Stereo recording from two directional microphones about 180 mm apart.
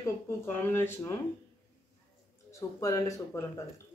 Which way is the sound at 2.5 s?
20° left (ahead or behind).